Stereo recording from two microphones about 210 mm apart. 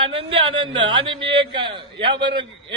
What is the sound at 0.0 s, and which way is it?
Speech, 25° right (ahead or behind).